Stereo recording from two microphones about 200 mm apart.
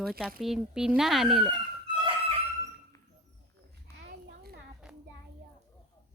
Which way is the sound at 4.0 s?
55° right (ahead or behind).